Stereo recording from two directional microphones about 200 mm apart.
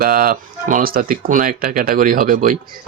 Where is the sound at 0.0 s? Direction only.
45° right (ahead or behind).